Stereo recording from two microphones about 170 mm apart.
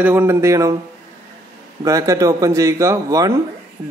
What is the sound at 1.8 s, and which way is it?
A man's voice, 20° right (ahead or behind).